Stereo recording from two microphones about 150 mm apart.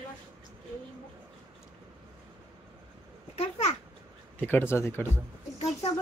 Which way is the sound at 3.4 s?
50° left (ahead or behind).